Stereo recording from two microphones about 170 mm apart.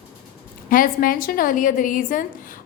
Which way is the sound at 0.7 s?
55° left (ahead or behind).